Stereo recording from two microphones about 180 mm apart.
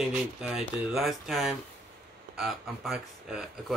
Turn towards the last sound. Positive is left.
turn(degrees=-5)  # may be behind; listen again after turning